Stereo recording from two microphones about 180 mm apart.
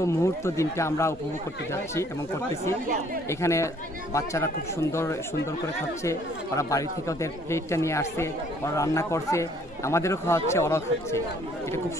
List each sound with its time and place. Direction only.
0.0 s speech: 15° left (ahead or behind)
3.3 s speech: 15° left (ahead or behind)